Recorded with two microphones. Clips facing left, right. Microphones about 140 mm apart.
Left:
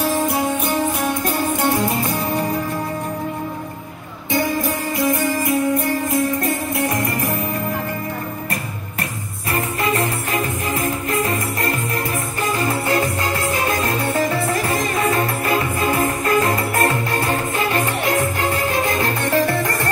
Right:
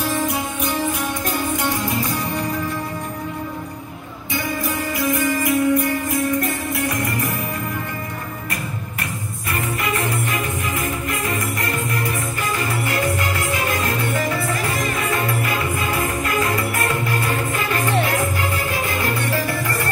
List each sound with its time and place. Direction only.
4.9 s music: 25° left (ahead or behind)
9.8 s music: 30° left (ahead or behind)
12.5 s music: 30° left (ahead or behind)
16.3 s music: 35° left (ahead or behind)